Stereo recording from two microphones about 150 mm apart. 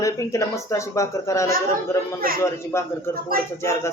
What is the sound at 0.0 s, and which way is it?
Speech, 20° left (ahead or behind).